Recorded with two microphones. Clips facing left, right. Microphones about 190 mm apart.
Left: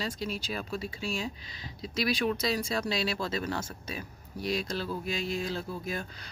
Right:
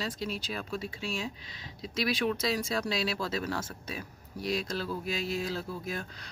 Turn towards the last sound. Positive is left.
turn(degrees=0)  # may be behind; listen again after turning